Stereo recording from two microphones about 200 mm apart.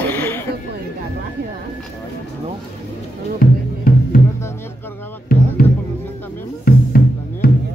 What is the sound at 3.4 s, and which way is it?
Music, 45° left (ahead or behind).